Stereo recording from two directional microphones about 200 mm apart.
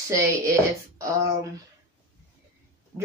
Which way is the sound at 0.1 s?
15° right (ahead or behind).